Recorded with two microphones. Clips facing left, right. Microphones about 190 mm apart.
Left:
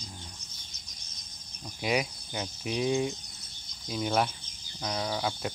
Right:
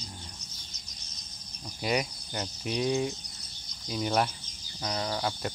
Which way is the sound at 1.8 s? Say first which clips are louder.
Even; centre (ahead or behind).